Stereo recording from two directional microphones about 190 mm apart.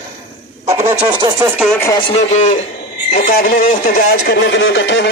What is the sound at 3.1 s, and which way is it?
Speech, 50° left (ahead or behind).